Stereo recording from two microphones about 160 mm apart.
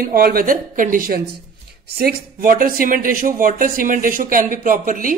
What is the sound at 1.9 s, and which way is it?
A woman's voice, 70° right (ahead or behind).